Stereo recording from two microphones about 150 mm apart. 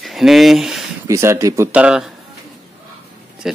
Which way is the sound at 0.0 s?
Centre (ahead or behind).